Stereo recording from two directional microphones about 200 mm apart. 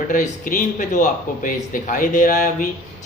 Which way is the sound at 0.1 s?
40° left (ahead or behind).